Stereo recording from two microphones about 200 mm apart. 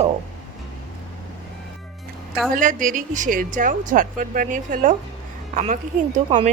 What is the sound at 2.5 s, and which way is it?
A woman's voice, 40° right (ahead or behind).